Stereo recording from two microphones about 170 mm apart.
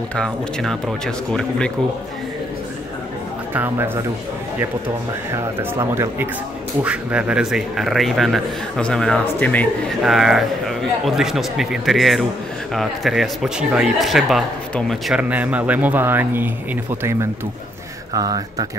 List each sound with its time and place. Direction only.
0.1 s speech: 5° left (ahead or behind)
3.5 s speech: 10° right (ahead or behind)
5.3 s speech: 15° right (ahead or behind)
18.1 s speech: 25° right (ahead or behind)